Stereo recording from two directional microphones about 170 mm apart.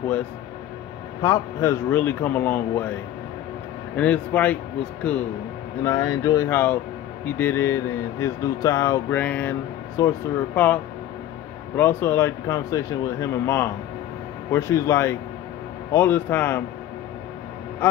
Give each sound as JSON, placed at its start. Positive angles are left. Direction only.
{"t": 1.2, "sound": "speech", "side_deg": 15}
{"t": 3.9, "sound": "speech", "side_deg": 10}
{"t": 5.9, "sound": "speech", "side_deg": 20}